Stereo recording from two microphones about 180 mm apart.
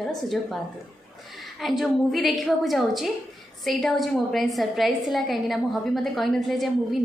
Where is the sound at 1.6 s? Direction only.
Centre (ahead or behind).